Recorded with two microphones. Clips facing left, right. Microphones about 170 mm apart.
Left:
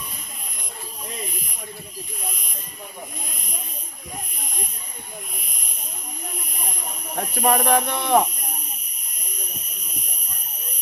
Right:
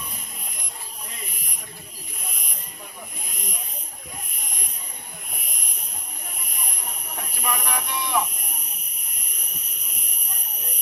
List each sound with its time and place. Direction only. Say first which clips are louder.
7.2 s hiss: left 9 dB; 50° left (ahead or behind)
7.7 s speech: left 8 dB; 60° left (ahead or behind)